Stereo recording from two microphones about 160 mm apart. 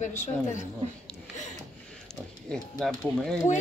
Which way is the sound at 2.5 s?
Centre (ahead or behind).